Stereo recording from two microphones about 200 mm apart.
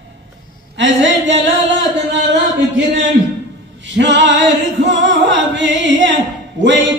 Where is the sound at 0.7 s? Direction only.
65° right (ahead or behind).